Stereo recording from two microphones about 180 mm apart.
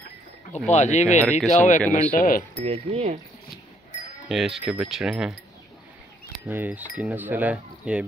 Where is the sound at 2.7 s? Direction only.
35° right (ahead or behind).